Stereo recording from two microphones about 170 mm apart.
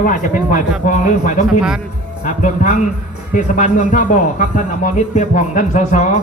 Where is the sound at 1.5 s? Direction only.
5° right (ahead or behind).